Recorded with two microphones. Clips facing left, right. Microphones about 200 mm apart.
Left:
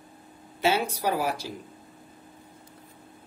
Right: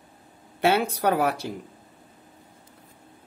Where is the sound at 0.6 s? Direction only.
60° right (ahead or behind).